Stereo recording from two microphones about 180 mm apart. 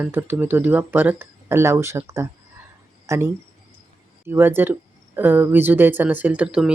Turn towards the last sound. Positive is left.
turn(degrees=-5)  # may be behind; listen again after turning